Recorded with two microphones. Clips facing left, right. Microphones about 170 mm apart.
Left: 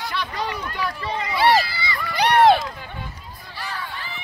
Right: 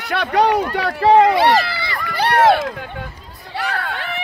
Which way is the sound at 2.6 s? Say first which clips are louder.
Right 7 dB; 60° right (ahead or behind).